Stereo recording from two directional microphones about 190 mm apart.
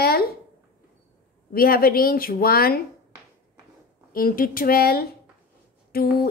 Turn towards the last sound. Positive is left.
turn(degrees=50)  # may be behind; listen again after turning